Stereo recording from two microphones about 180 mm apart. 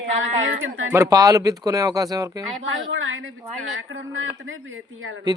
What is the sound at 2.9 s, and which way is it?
Speech, 90° right.